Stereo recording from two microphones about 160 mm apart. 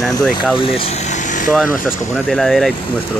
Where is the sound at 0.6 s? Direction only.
30° left (ahead or behind).